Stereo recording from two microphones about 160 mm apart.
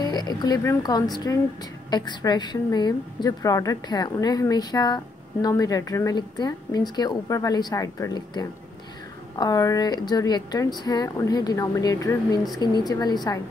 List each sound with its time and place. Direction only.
0.0 s a woman's voice: 25° left (ahead or behind)